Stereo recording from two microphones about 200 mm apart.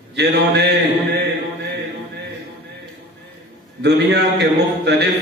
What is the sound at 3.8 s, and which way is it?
A man's voice, 55° right (ahead or behind).